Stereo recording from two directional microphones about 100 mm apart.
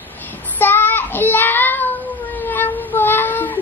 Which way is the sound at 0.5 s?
20° left (ahead or behind).